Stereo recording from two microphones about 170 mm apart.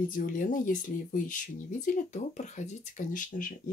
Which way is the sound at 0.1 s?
50° left (ahead or behind).